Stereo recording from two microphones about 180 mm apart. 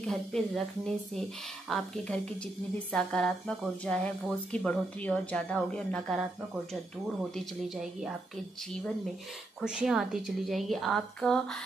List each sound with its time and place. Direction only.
0.0 s speech: centre (ahead or behind)
7.3 s speech: 5° right (ahead or behind)
9.6 s speech: 5° right (ahead or behind)